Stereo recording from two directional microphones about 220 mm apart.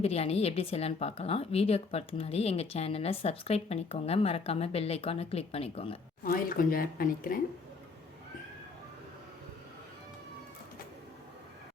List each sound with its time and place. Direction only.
0.0 s a woman's voice: 30° left (ahead or behind)
6.2 s speech: 40° left (ahead or behind)